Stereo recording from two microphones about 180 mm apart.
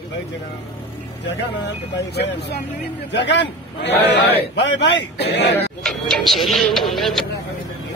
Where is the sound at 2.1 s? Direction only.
65° left (ahead or behind).